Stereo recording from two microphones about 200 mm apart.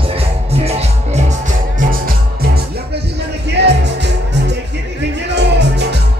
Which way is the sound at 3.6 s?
60° right (ahead or behind).